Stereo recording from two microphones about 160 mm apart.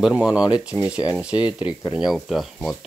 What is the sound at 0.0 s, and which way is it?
Speech, 5° right (ahead or behind).